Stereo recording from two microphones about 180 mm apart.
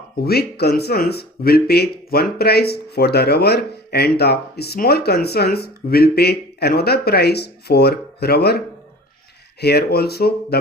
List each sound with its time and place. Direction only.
0.2 s speech: 60° left (ahead or behind)